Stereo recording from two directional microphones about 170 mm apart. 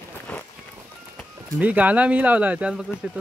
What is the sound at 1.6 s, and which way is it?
Speech, 10° right (ahead or behind).